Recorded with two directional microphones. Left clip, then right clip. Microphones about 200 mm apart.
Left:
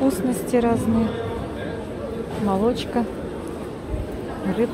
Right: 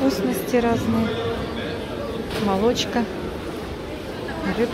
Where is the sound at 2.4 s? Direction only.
5° left (ahead or behind).